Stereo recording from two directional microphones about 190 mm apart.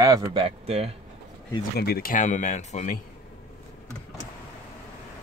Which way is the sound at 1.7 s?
55° left (ahead or behind).